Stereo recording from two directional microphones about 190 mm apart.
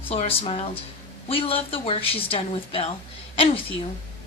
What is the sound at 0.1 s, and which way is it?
A woman's voice, 30° left (ahead or behind).